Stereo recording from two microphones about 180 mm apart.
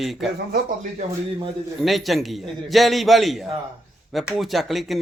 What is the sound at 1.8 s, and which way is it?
A man's voice, centre (ahead or behind).